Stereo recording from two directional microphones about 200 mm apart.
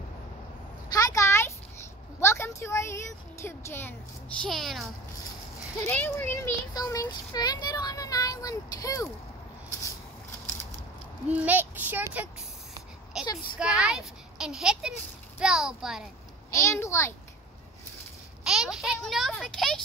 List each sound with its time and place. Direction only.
0.8 s a sound: 20° left (ahead or behind)
2.1 s a woman's voice: 15° left (ahead or behind)
5.9 s speech: 10° left (ahead or behind)
11.2 s a child's voice: 5° right (ahead or behind)
13.6 s a child's voice: 5° right (ahead or behind)
16.4 s speech: 15° left (ahead or behind)
18.4 s a child's voice: centre (ahead or behind)